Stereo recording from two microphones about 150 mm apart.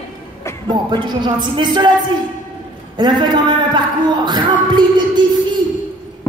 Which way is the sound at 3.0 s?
30° right (ahead or behind).